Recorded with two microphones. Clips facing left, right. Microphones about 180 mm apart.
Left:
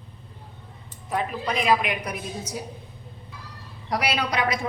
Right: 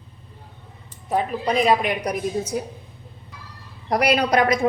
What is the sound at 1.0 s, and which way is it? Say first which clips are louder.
A woman's voice: right 5 dB; 35° right (ahead or behind).